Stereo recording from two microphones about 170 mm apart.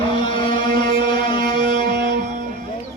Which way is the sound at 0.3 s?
30° left (ahead or behind).